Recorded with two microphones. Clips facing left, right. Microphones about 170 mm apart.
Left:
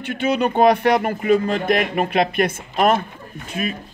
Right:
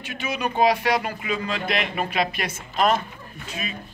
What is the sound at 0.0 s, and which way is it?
Speech, 60° left (ahead or behind).